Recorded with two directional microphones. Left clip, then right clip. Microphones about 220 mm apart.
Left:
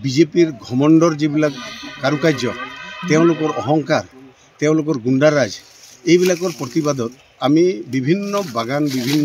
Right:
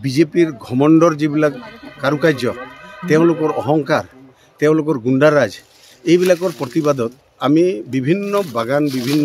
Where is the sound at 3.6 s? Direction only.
20° right (ahead or behind).